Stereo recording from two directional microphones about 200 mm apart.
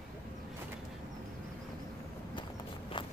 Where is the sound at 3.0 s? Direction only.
20° left (ahead or behind).